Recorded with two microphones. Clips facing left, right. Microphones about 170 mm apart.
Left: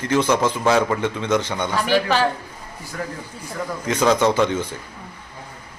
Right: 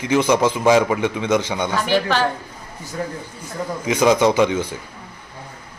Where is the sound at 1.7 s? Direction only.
Centre (ahead or behind).